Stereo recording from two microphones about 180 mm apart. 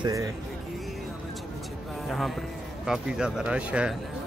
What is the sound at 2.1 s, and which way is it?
Speech, centre (ahead or behind).